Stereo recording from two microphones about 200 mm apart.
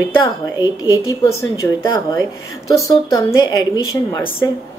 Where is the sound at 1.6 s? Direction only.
20° left (ahead or behind).